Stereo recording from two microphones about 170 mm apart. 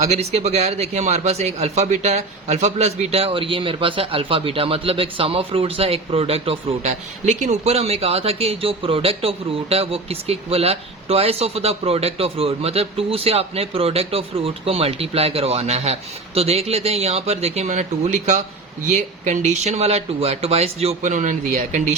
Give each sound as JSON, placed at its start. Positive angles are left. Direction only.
{"t": 0.0, "sound": "a man's voice", "side_deg": -40}